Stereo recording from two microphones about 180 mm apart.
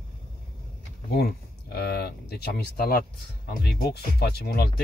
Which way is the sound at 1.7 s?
60° left (ahead or behind).